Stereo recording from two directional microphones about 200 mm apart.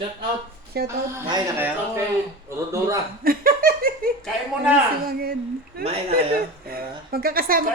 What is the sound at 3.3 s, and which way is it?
Laughter, 45° right (ahead or behind).